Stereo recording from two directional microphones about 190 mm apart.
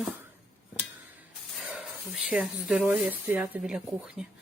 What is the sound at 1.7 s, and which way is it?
Speech, 5° right (ahead or behind).